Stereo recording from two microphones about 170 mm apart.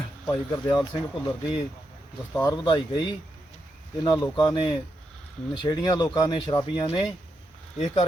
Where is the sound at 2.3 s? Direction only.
20° left (ahead or behind).